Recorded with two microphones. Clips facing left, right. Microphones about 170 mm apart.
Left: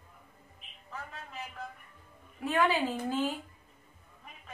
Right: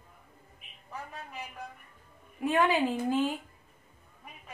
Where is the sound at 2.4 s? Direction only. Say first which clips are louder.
Right 2 dB; 15° right (ahead or behind).